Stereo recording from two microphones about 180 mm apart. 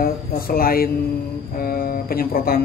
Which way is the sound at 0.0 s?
55° left (ahead or behind).